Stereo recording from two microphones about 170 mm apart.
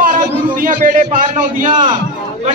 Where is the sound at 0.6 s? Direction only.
50° right (ahead or behind).